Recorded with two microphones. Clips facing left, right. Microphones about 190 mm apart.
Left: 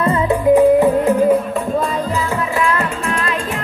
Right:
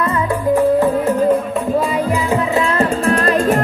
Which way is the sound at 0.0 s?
30° left (ahead or behind).